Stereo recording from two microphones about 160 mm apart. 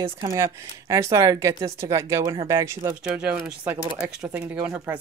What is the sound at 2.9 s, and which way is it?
Speech, 5° right (ahead or behind).